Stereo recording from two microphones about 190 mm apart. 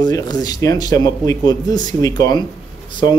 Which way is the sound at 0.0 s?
20° left (ahead or behind).